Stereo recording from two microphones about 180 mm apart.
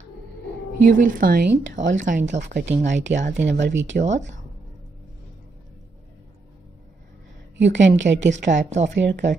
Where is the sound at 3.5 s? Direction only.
80° right.